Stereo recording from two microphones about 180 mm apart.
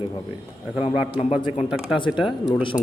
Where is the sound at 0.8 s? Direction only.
35° left (ahead or behind).